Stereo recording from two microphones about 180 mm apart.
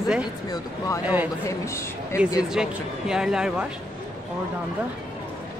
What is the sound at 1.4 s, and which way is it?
Speech, 15° left (ahead or behind).